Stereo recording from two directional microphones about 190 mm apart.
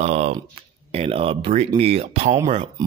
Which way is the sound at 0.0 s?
35° right (ahead or behind).